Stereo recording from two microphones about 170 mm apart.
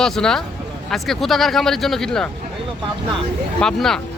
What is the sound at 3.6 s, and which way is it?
Speech, 5° left (ahead or behind).